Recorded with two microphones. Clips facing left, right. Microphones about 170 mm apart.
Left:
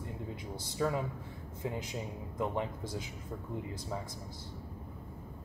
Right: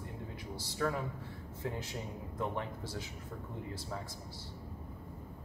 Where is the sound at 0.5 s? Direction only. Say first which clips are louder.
Left 2 dB; 20° left (ahead or behind).